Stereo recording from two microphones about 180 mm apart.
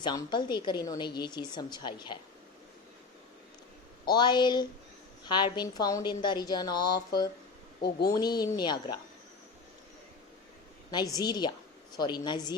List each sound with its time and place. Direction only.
0.0 s a woman's voice: 25° left (ahead or behind)
4.0 s a woman's voice: 25° left (ahead or behind)
10.9 s a woman's voice: 20° left (ahead or behind)